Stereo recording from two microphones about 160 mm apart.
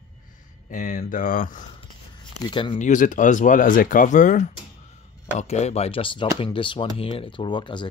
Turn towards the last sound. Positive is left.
turn(degrees=30)  # may be behind; listen again after turning